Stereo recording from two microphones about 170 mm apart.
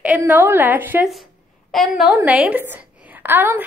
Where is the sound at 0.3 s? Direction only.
10° right (ahead or behind).